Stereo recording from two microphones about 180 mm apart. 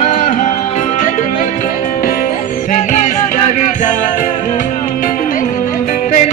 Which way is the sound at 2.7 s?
40° left (ahead or behind).